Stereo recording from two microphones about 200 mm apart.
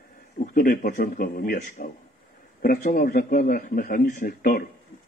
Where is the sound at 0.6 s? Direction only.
45° left (ahead or behind).